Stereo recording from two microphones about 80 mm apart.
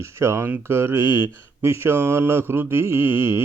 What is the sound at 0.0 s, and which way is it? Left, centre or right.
Speech, right.